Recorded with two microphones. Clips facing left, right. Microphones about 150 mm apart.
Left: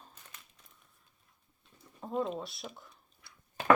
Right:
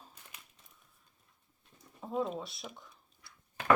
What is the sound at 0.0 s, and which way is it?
Crumpling, 10° right (ahead or behind).